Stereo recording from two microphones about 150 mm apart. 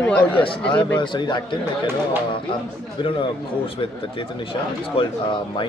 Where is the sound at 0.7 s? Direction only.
30° left (ahead or behind).